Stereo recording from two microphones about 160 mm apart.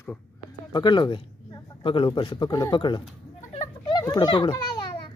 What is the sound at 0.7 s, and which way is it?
Speech, 30° left (ahead or behind).